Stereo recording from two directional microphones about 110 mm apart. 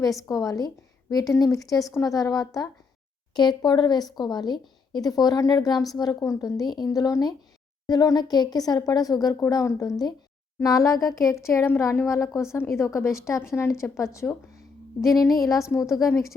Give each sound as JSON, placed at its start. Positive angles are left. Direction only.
{"t": 0.2, "sound": "a woman's voice", "side_deg": 30}
{"t": 15.4, "sound": "a woman's voice", "side_deg": 30}